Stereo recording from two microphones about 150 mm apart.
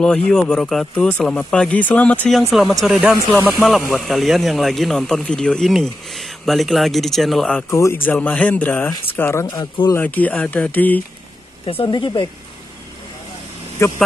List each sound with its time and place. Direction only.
0.0 s speech: 5° left (ahead or behind)
7.5 s speech: 15° left (ahead or behind)
9.6 s speech: 30° left (ahead or behind)
9.9 s speech: 10° left (ahead or behind)
11.6 s speech: 35° left (ahead or behind)
13.8 s speech: 20° left (ahead or behind)